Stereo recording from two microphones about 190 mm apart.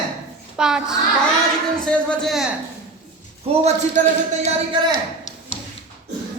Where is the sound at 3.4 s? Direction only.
35° right (ahead or behind).